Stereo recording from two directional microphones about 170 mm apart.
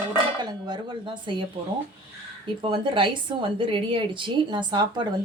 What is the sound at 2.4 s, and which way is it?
Speech, 30° right (ahead or behind).